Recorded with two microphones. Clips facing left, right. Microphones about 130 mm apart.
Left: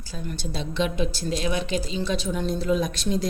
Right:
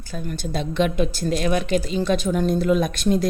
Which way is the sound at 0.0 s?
55° right (ahead or behind).